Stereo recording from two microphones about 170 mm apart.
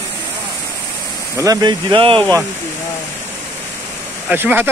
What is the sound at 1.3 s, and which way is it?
Speech, 20° right (ahead or behind).